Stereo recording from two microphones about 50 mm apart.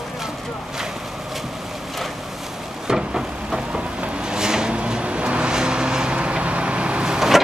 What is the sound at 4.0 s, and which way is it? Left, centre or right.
Vehicle, centre.